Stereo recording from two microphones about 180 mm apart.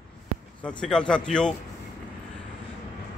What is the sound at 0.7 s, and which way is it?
Speech, 5° left (ahead or behind).